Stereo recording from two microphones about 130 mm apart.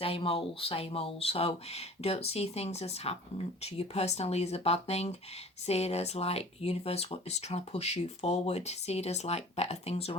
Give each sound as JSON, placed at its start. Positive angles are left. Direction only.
{"t": 0.0, "sound": "speech", "side_deg": 45}